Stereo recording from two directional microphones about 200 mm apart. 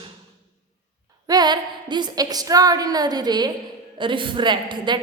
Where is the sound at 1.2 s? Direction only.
20° right (ahead or behind).